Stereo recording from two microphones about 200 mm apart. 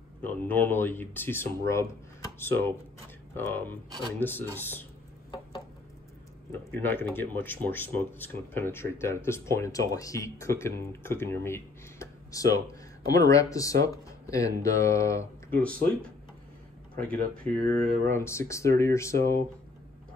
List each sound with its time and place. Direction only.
0.2 s speech: 10° left (ahead or behind)
6.7 s speech: 10° left (ahead or behind)
17.4 s speech: 35° right (ahead or behind)
18.0 s speech: 15° left (ahead or behind)